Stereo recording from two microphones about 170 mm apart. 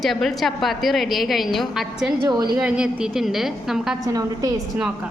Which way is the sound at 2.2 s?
25° right (ahead or behind).